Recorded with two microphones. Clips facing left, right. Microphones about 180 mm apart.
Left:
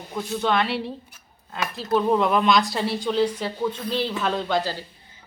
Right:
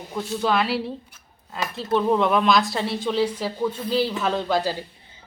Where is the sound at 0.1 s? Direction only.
Centre (ahead or behind).